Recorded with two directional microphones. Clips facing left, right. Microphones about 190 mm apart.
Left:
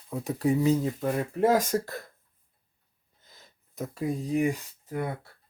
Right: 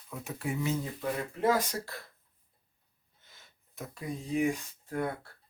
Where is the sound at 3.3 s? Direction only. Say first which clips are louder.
Left 5 dB; 40° left (ahead or behind).